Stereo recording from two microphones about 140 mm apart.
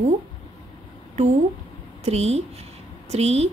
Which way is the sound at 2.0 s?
50° right (ahead or behind).